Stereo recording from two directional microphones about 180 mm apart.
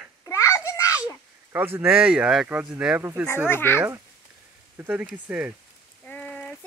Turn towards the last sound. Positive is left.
turn(degrees=5)  # may be behind; listen again after turning